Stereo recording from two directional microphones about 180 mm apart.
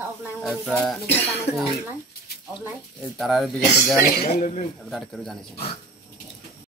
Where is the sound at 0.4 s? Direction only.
Centre (ahead or behind).